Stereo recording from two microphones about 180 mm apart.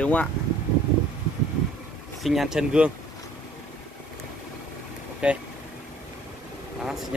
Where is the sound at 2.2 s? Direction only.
Centre (ahead or behind).